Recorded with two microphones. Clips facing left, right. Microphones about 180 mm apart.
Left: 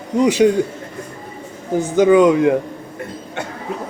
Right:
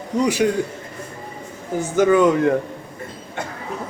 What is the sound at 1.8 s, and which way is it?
Speech, 15° left (ahead or behind).